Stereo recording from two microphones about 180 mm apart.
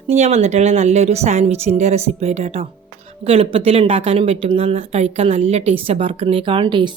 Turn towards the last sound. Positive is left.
turn(degrees=-25)  # may be behind; listen again after turning